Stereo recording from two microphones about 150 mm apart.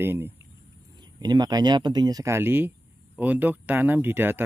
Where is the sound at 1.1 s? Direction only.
25° right (ahead or behind).